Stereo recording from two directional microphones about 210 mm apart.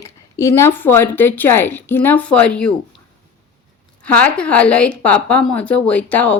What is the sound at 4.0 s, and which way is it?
Speech, 5° left (ahead or behind).